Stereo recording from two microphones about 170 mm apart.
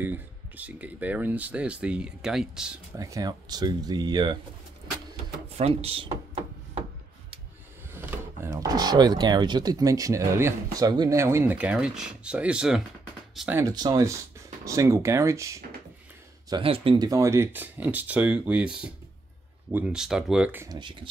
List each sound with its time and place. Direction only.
0.0 s speech: 10° right (ahead or behind)
3.0 s speech: 20° right (ahead or behind)
5.5 s a sound: 40° right (ahead or behind)
7.9 s speech: 10° right (ahead or behind)
13.7 s speech: 20° right (ahead or behind)
16.4 s speech: 30° right (ahead or behind); by 20.6 s 5° right (ahead or behind)
20.6 s speech: 25° right (ahead or behind)